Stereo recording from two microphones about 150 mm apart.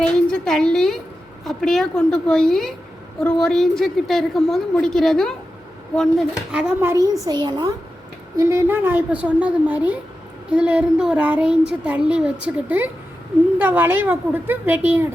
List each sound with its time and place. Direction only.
0.1 s a woman's voice: 5° left (ahead or behind)
6.5 s a woman's voice: 10° right (ahead or behind)
7.3 s a woman's voice: 30° right (ahead or behind)
8.4 s a woman's voice: 20° right (ahead or behind)